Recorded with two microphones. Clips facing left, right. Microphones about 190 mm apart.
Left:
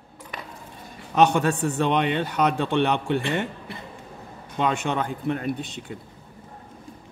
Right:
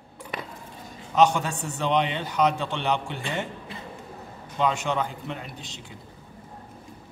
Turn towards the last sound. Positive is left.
turn(degrees=55)  # may be behind; listen again after turning